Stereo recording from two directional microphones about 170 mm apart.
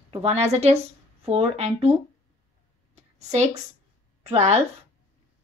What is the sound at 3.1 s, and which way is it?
A woman's voice, 40° right (ahead or behind).